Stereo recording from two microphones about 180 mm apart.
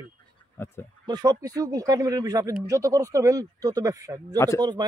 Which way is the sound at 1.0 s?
25° right (ahead or behind).